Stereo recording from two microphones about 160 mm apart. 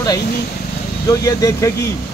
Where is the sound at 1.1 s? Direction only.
20° left (ahead or behind).